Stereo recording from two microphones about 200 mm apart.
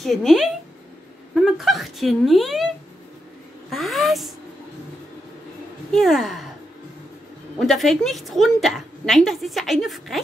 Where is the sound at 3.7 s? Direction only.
Centre (ahead or behind).